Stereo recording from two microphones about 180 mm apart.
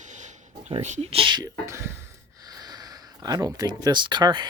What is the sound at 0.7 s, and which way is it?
Speech, 40° right (ahead or behind).